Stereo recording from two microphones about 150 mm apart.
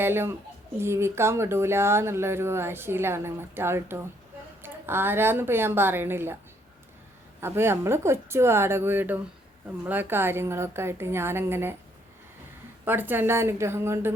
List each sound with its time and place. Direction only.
0.0 s speech: 15° right (ahead or behind)
7.4 s speech: 15° right (ahead or behind)
12.8 s speech: 15° right (ahead or behind)